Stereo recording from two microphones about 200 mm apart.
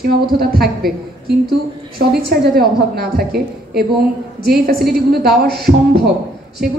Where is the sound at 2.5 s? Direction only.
50° right (ahead or behind).